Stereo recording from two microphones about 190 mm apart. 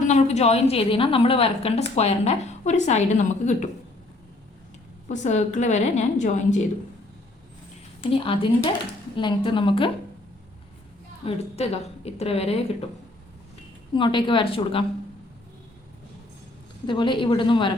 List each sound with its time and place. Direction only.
0.0 s a woman's voice: 35° left (ahead or behind)
5.0 s a woman's voice: 40° left (ahead or behind)
8.2 s a woman's voice: 25° left (ahead or behind)
11.3 s a woman's voice: 30° left (ahead or behind)
13.9 s a woman's voice: 25° left (ahead or behind)
16.8 s a woman's voice: 25° left (ahead or behind)